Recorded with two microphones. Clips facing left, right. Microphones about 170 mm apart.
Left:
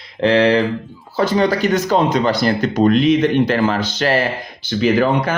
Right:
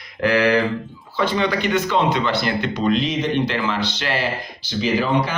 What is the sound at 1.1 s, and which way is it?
Speech, 40° left (ahead or behind).